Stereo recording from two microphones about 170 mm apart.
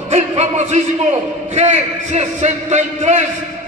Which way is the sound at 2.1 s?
40° right (ahead or behind).